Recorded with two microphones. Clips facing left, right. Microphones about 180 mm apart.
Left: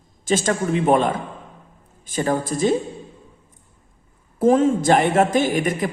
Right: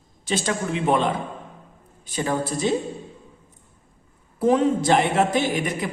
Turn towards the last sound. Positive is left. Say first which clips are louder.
# left 4 dB
turn(degrees=50)  # may be behind; listen again after turning